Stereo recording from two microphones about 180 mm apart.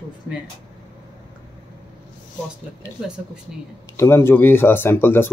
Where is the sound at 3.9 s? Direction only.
15° left (ahead or behind).